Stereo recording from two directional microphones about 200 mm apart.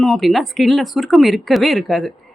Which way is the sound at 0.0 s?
Centre (ahead or behind).